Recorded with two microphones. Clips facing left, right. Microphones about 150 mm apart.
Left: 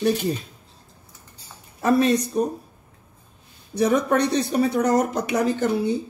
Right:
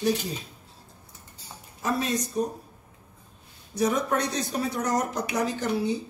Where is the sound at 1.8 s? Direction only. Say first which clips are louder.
Left 9 dB; 65° left (ahead or behind).